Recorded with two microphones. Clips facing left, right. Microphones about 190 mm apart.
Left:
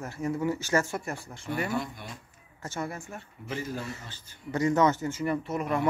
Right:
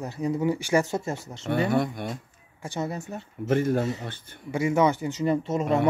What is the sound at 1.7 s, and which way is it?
Speech, 60° right (ahead or behind).